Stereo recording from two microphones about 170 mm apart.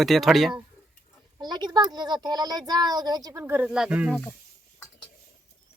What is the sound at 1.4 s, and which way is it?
Speech, 25° right (ahead or behind).